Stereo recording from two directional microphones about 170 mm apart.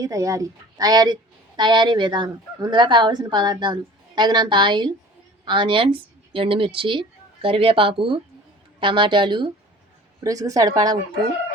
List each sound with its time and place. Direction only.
0.0 s a woman's voice: 20° right (ahead or behind)